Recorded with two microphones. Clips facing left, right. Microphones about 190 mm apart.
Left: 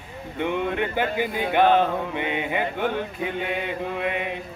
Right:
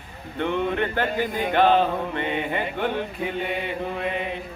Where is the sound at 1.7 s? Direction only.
5° right (ahead or behind).